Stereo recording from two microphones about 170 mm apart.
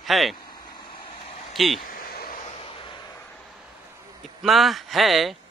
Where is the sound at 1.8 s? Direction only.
60° left (ahead or behind).